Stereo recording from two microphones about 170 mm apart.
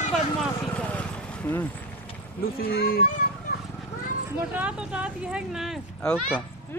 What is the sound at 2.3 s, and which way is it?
Speech, 60° left (ahead or behind).